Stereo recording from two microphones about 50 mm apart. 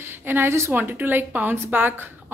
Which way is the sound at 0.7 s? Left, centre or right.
Right.